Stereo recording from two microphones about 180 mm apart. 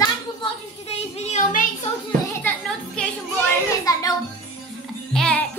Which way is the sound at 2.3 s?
5° left (ahead or behind).